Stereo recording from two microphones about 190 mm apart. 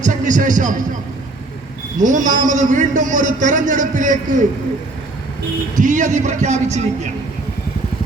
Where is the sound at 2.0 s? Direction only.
40° right (ahead or behind).